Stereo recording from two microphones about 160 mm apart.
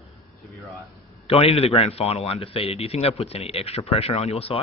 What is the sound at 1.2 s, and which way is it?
Speech, 40° left (ahead or behind).